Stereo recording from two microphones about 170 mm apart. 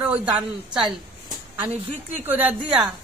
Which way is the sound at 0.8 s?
25° right (ahead or behind).